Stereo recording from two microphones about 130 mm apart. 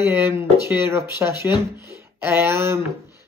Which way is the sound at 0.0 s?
20° right (ahead or behind).